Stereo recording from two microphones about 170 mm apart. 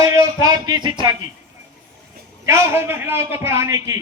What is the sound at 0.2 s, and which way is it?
Speech, 20° right (ahead or behind).